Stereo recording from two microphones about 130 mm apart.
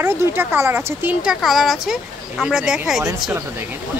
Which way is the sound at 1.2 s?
5° right (ahead or behind).